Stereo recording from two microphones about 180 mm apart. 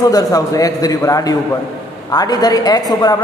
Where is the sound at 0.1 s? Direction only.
20° left (ahead or behind).